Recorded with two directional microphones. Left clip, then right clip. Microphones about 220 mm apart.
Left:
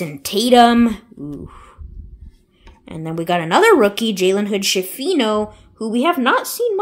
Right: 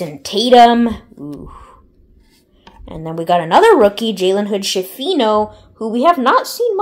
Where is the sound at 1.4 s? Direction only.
30° left (ahead or behind).